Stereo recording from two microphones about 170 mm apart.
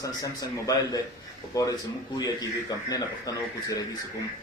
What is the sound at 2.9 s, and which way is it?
Speech, 20° left (ahead or behind).